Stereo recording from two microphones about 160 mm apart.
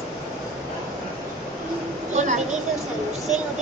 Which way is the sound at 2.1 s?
50° right (ahead or behind).